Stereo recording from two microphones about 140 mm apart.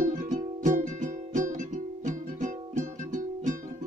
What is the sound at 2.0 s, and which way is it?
Music, 60° right (ahead or behind).